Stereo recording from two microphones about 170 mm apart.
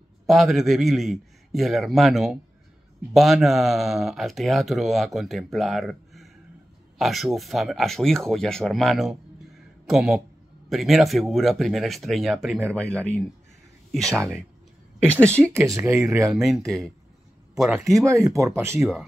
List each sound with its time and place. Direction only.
0.3 s speech: centre (ahead or behind)
15.5 s speech: 15° right (ahead or behind)
16.3 s speech: centre (ahead or behind)
17.9 s speech: 15° right (ahead or behind)